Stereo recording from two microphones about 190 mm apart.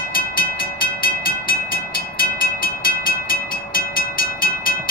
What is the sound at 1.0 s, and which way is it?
Train, 50° left (ahead or behind).